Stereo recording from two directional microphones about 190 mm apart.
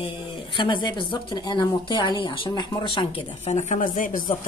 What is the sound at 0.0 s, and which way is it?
Speech, 25° left (ahead or behind).